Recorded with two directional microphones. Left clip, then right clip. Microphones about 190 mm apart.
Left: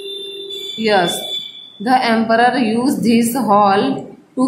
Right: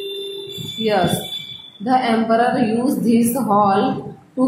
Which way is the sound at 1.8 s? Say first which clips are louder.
Left 3 dB; 20° left (ahead or behind).